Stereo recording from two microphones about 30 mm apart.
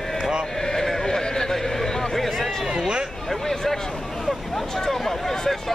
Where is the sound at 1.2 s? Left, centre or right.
Centre.